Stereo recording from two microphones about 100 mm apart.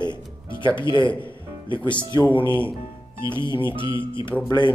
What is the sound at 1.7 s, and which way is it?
Speech, 50° left (ahead or behind).